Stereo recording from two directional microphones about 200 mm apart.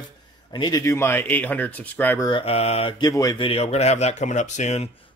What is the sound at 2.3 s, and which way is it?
Speech, 30° left (ahead or behind).